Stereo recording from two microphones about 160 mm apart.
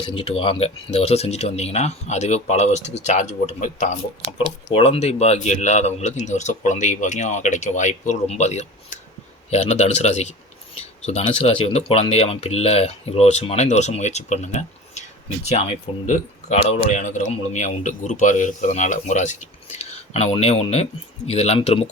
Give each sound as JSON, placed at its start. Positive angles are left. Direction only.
{"t": 0.0, "sound": "speech", "side_deg": 35}